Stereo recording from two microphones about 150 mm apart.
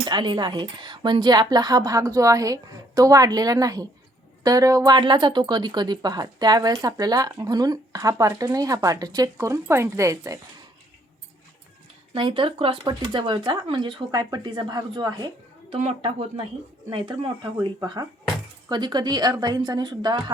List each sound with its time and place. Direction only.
0.0 s speech: 30° right (ahead or behind)
12.1 s speech: 35° right (ahead or behind)
15.8 s speech: 40° right (ahead or behind)